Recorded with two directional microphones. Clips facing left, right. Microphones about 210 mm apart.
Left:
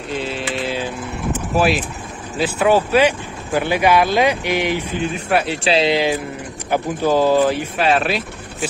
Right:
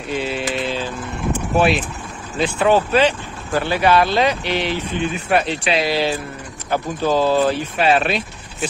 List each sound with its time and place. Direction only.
0.2 s a sound: centre (ahead or behind)
0.7 s vehicle: 10° left (ahead or behind)
1.5 s speech: centre (ahead or behind)
5.6 s speech: 30° left (ahead or behind)
5.9 s speech: 15° left (ahead or behind)
7.7 s speech: centre (ahead or behind)